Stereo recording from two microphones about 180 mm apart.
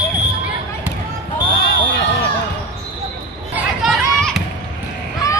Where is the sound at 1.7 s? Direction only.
80° left.